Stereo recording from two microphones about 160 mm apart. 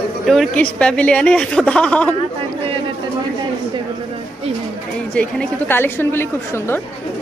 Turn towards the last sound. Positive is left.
turn(degrees=15)  # may be behind; listen again after turning